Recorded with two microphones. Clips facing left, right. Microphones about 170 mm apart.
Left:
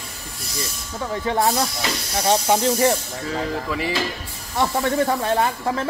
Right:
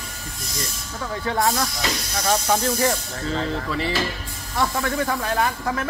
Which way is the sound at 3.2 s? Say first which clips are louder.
Even; 10° left (ahead or behind).